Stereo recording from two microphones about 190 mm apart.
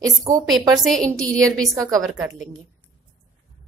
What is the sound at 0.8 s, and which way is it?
Speech, centre (ahead or behind).